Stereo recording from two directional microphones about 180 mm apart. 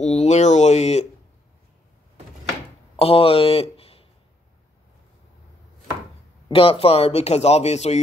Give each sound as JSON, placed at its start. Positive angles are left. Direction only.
{"t": 0.0, "sound": "speech", "side_deg": 40}
{"t": 3.0, "sound": "speech", "side_deg": 30}
{"t": 6.5, "sound": "speech", "side_deg": 30}